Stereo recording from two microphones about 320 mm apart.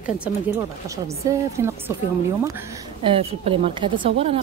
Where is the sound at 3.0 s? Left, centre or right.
Centre.